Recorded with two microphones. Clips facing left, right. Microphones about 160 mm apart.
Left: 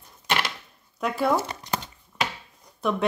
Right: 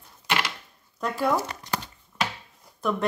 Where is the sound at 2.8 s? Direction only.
5° left (ahead or behind).